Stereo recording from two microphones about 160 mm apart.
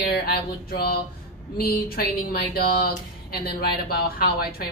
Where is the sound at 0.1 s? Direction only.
75° left (ahead or behind).